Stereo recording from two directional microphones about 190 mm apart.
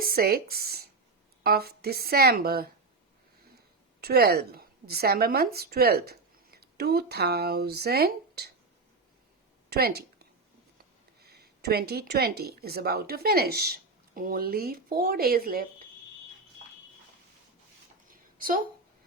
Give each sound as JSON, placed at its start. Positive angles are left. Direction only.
{"t": 0.0, "sound": "a woman's voice", "side_deg": -50}
{"t": 4.0, "sound": "a woman's voice", "side_deg": -55}
{"t": 9.6, "sound": "speech", "side_deg": -55}
{"t": 11.2, "sound": "speech", "side_deg": -55}
{"t": 18.3, "sound": "speech", "side_deg": -45}